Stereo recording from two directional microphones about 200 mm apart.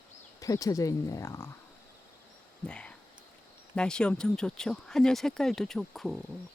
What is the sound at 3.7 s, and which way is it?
Speech, 5° left (ahead or behind).